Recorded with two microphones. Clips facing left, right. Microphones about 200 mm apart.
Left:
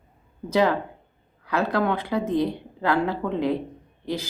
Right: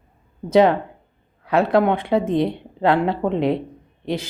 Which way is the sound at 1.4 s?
25° right (ahead or behind).